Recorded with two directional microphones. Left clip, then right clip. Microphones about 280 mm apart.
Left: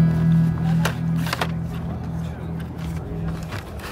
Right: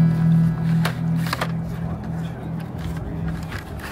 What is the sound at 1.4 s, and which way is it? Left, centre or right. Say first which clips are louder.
Music: left 2 dB; centre.